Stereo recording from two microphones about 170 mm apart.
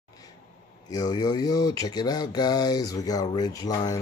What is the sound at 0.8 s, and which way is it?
Speech, 20° left (ahead or behind).